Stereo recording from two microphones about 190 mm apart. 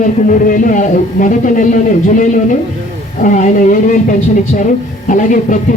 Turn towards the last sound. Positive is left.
turn(degrees=40)  # may be behind; listen again after turning